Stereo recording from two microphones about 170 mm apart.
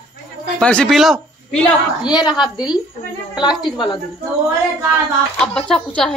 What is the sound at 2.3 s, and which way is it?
Speech, 5° right (ahead or behind).